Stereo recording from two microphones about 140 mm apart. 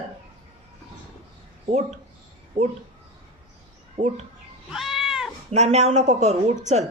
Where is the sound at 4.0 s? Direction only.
50° right (ahead or behind).